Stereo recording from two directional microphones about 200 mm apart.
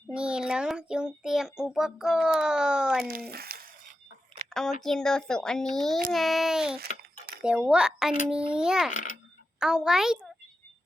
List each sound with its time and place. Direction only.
0.1 s a child's voice: 5° right (ahead or behind)
3.0 s a sound: 50° right (ahead or behind)
4.4 s a sound: centre (ahead or behind)
4.8 s speech: 5° left (ahead or behind)
8.9 s a child's voice: 40° left (ahead or behind)
9.6 s a woman's voice: 5° right (ahead or behind)